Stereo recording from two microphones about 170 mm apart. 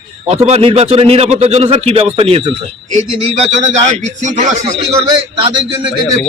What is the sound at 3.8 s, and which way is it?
Speech, 45° right (ahead or behind).